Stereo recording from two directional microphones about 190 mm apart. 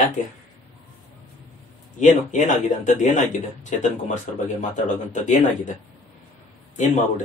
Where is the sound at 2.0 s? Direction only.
40° left (ahead or behind).